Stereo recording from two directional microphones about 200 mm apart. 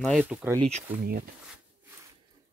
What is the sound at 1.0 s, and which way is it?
Speech, 50° right (ahead or behind).